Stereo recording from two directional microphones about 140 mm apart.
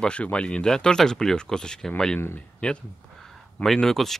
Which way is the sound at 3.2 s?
Centre (ahead or behind).